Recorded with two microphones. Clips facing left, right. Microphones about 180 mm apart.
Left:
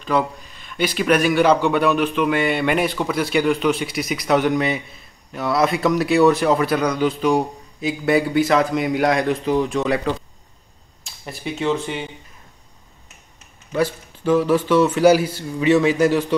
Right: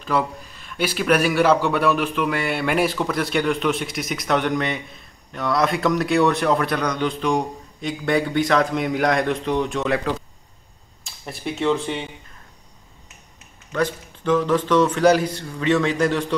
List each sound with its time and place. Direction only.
0.0 s a man's voice: centre (ahead or behind)
11.2 s a man's voice: centre (ahead or behind)
13.7 s a man's voice: 10° left (ahead or behind)